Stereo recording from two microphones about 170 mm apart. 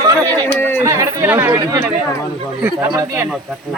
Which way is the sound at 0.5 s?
10° left (ahead or behind).